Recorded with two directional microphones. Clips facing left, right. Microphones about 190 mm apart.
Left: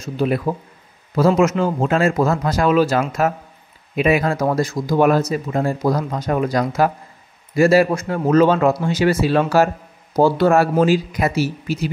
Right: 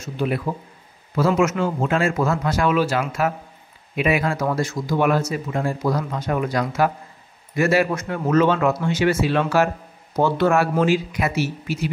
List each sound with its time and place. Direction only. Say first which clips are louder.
0.0 s a man's voice: left 4 dB; 40° left (ahead or behind)